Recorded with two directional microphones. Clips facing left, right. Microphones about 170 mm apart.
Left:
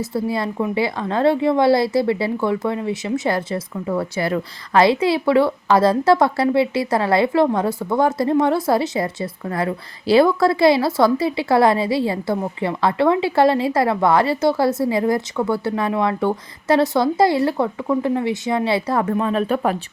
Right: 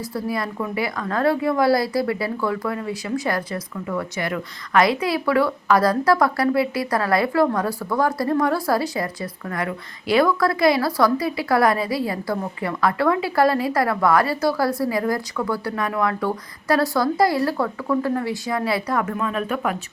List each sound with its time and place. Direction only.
0.0 s a woman's voice: 25° left (ahead or behind)